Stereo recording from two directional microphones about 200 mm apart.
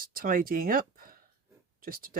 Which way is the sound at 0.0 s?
45° right (ahead or behind).